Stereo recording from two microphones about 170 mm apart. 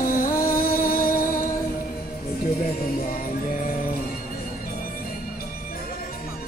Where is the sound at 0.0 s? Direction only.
55° left (ahead or behind).